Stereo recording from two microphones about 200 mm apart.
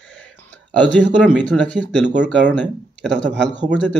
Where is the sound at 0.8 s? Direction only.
5° left (ahead or behind).